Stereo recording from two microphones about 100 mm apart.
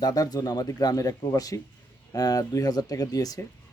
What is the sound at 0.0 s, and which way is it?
Speech, 40° left (ahead or behind).